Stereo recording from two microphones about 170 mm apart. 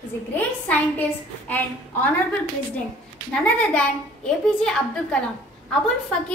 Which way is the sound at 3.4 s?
10° left (ahead or behind).